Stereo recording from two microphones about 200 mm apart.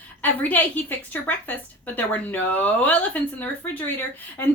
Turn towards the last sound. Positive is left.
turn(degrees=10)  # may be behind; listen again after turning